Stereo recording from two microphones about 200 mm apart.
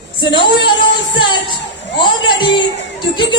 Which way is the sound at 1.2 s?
25° left (ahead or behind).